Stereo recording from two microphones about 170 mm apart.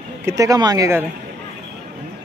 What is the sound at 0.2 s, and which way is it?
Speech, 20° right (ahead or behind).